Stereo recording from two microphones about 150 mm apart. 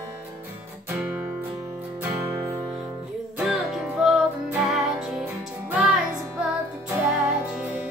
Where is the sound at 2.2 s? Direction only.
20° right (ahead or behind).